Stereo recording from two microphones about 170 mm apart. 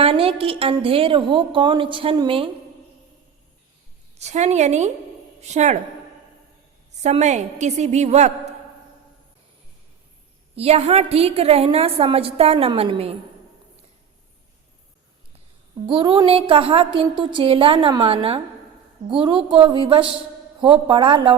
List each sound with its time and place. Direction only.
0.0 s a woman's voice: 35° right (ahead or behind)
4.2 s a woman's voice: 40° right (ahead or behind)
7.0 s a woman's voice: 40° right (ahead or behind)
10.5 s a woman's voice: 35° right (ahead or behind)
15.9 s a woman's voice: 30° right (ahead or behind)